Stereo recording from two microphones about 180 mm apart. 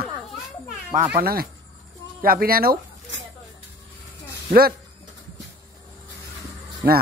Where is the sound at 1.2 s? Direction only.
60° right (ahead or behind).